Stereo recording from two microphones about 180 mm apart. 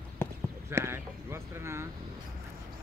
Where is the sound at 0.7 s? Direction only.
15° right (ahead or behind).